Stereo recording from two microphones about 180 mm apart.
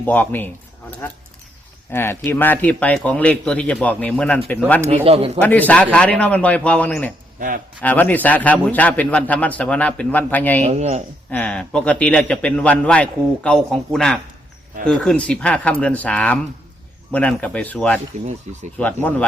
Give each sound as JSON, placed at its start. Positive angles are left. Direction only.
{"t": 0.0, "sound": "a man's voice", "side_deg": 10}
{"t": 1.9, "sound": "a man's voice", "side_deg": 10}
{"t": 5.0, "sound": "speech", "side_deg": -35}
{"t": 5.4, "sound": "a man's voice", "side_deg": 10}
{"t": 7.3, "sound": "speech", "side_deg": -50}
{"t": 7.8, "sound": "a man's voice", "side_deg": 10}
{"t": 10.7, "sound": "speech", "side_deg": -40}
{"t": 11.3, "sound": "a man's voice", "side_deg": 10}